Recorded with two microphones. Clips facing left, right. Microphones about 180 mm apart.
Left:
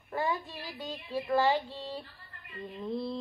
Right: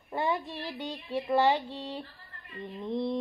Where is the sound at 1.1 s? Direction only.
20° right (ahead or behind).